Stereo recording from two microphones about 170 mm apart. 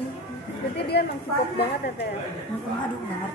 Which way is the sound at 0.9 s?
75° left (ahead or behind).